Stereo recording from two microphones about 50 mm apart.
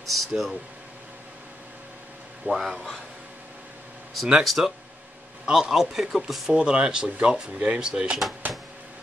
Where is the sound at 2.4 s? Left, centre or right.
Right.